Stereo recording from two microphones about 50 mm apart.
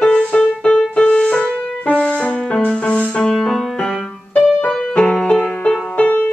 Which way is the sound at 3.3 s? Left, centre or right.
Centre.